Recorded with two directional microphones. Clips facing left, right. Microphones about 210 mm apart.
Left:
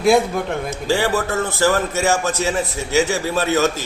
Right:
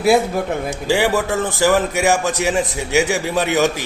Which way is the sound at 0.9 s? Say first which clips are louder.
Right 2 dB; 15° right (ahead or behind).